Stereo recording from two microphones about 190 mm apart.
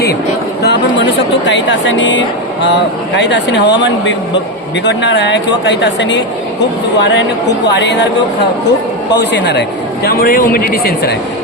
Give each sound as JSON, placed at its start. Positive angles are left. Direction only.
{"t": 0.6, "sound": "chatter", "side_deg": 60}
{"t": 1.5, "sound": "speech", "side_deg": 70}
{"t": 9.1, "sound": "a man's voice", "side_deg": 65}